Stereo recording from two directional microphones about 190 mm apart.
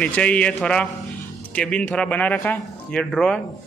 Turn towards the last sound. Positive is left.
turn(degrees=5)  # may be behind; listen again after turning